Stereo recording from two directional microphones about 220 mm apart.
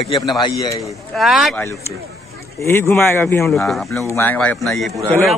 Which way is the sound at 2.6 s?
10° left (ahead or behind).